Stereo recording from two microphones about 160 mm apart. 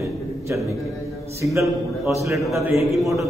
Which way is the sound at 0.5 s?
15° right (ahead or behind).